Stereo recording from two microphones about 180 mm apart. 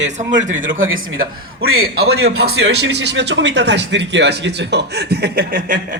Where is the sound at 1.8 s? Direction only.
60° right (ahead or behind).